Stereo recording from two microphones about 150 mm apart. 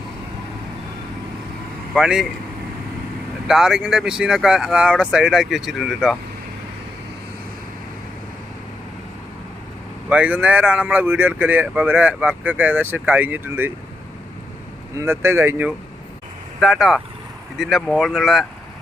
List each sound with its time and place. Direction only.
1.9 s speech: 5° right (ahead or behind)
3.4 s speech: 5° right (ahead or behind)
10.1 s speech: 10° right (ahead or behind)
14.9 s speech: 15° right (ahead or behind)
16.6 s speech: centre (ahead or behind)